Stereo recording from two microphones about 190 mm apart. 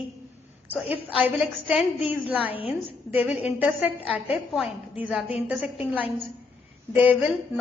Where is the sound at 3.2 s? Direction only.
30° left (ahead or behind).